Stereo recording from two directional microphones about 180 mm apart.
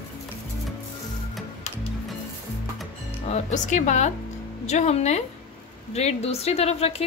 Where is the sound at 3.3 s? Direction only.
40° left (ahead or behind).